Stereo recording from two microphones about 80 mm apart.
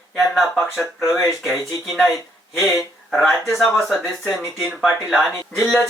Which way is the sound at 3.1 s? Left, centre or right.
Centre.